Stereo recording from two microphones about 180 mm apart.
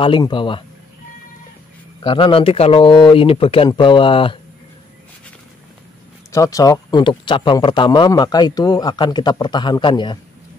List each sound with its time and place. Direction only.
0.0 s a man's voice: 25° left (ahead or behind)
2.0 s a man's voice: 30° left (ahead or behind)
6.3 s a man's voice: 15° left (ahead or behind)